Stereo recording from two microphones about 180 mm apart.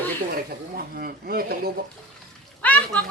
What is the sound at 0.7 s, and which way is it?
Speech, 55° right (ahead or behind).